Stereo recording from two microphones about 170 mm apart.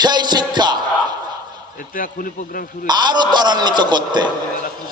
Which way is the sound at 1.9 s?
55° left (ahead or behind).